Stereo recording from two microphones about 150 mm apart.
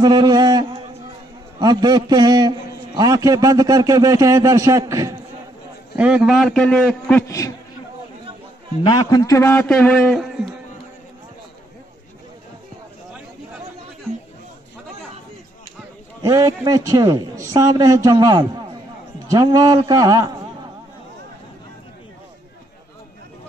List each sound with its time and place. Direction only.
0.0 s a man's voice: 25° right (ahead or behind)
5.9 s a man's voice: 10° right (ahead or behind); by 7.2 s 5° left (ahead or behind)
7.2 s a man's voice: 20° left (ahead or behind)
8.8 s a man's voice: 25° left (ahead or behind); by 10.5 s centre (ahead or behind)
16.2 s a man's voice: 25° right (ahead or behind)